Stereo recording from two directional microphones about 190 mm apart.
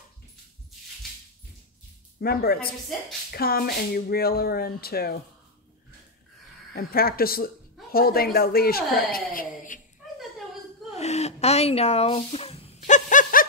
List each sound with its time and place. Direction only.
2.1 s speech: 55° left (ahead or behind)
6.7 s a woman's voice: 50° left (ahead or behind)
11.0 s a sound: 35° left (ahead or behind)